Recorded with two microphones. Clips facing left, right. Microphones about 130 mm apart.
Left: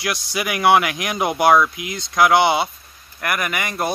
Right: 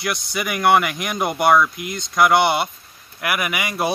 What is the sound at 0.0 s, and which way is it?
Speech, centre (ahead or behind).